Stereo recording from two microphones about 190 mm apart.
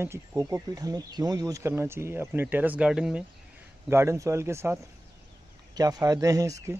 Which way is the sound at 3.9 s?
15° right (ahead or behind).